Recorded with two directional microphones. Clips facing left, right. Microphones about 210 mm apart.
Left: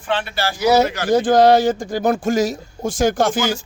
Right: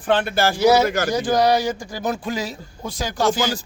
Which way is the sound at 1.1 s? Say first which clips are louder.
Left 8 dB; 55° left (ahead or behind).